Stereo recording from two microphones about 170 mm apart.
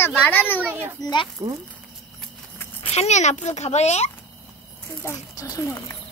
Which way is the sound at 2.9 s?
40° left (ahead or behind).